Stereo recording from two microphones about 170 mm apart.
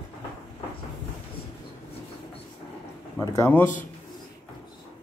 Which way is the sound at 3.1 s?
15° left (ahead or behind).